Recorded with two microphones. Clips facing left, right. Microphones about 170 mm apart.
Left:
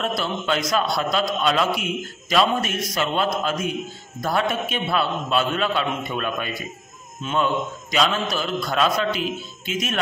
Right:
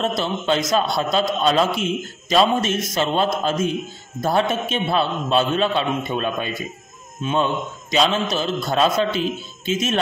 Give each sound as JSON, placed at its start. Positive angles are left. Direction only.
{"t": 0.0, "sound": "a man's voice", "side_deg": -25}
{"t": 7.9, "sound": "a man's voice", "side_deg": -25}